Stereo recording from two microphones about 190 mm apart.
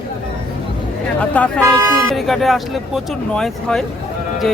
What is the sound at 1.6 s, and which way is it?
Speech, 15° right (ahead or behind).